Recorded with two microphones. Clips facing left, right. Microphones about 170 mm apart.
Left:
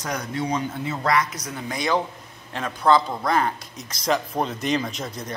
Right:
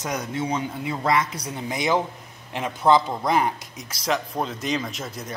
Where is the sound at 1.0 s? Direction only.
25° right (ahead or behind); by 5.3 s 5° right (ahead or behind).